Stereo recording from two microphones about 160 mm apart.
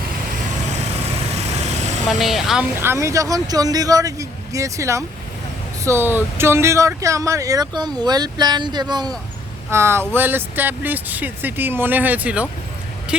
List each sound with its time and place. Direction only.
2.0 s speech: centre (ahead or behind)
2.8 s speech: 20° right (ahead or behind)